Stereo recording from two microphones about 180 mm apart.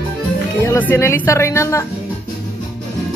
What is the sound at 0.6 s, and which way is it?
Speech, 10° left (ahead or behind).